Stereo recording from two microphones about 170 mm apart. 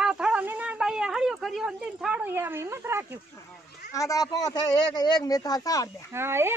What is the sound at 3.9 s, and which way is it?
Speech, 20° left (ahead or behind).